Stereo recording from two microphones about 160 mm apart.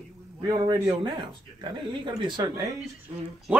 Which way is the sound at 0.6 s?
20° right (ahead or behind).